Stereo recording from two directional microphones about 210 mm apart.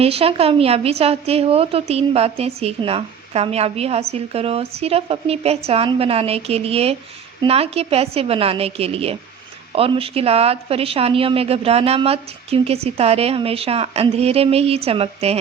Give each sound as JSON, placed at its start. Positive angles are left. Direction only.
{"t": 0.0, "sound": "a woman's voice", "side_deg": -30}